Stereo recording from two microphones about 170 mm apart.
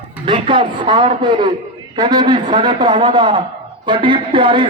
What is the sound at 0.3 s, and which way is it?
A man's voice, 30° right (ahead or behind).